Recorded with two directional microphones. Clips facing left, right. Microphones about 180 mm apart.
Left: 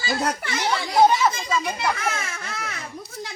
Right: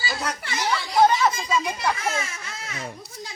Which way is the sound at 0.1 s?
55° left (ahead or behind).